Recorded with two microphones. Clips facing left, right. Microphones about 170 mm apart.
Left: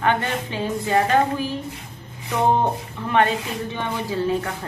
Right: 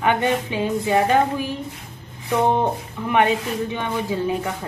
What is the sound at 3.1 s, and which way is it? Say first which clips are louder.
A woman's voice: right 1 dB; 15° right (ahead or behind).